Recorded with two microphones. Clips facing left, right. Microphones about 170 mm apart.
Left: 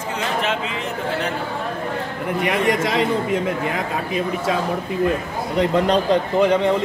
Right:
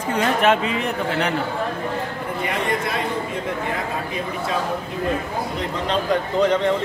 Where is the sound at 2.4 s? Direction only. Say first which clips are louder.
Left 4 dB; 85° left.